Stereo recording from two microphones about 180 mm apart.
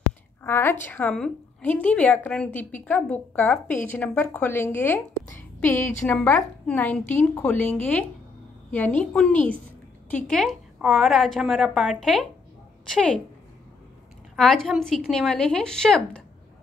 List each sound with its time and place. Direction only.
0.4 s a woman's voice: 15° left (ahead or behind)
14.3 s a woman's voice: centre (ahead or behind)